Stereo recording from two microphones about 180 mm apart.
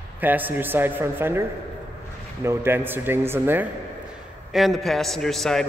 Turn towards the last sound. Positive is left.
turn(degrees=0)  # may be behind; listen again after turning